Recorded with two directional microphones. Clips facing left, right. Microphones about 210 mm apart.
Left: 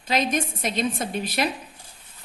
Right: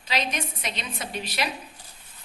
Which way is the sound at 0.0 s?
50° left (ahead or behind).